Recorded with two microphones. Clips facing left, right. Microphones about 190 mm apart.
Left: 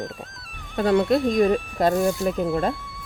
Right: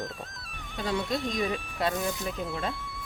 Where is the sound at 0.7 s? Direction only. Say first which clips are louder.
Left 11 dB; 60° left (ahead or behind).